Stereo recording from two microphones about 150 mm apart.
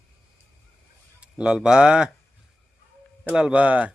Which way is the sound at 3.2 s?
5° right (ahead or behind).